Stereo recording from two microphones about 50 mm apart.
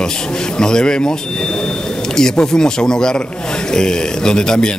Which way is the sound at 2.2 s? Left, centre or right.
Centre.